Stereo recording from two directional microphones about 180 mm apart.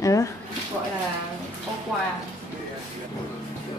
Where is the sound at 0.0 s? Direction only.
20° left (ahead or behind).